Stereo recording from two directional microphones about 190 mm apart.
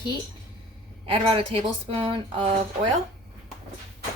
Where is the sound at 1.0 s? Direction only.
30° right (ahead or behind).